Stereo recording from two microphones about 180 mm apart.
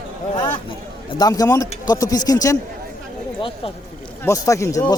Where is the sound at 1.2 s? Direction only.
20° left (ahead or behind).